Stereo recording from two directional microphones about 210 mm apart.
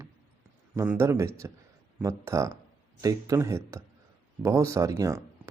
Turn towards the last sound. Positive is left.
turn(degrees=-15)  # may be behind; listen again after turning